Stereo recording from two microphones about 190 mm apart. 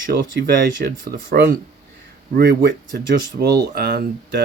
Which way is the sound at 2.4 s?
60° right (ahead or behind).